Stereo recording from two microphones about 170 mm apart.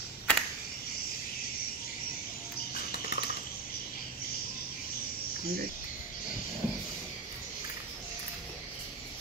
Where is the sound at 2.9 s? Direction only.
70° left (ahead or behind).